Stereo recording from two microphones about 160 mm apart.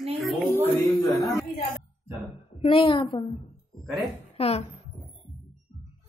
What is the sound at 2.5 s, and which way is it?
Speech, 35° left (ahead or behind).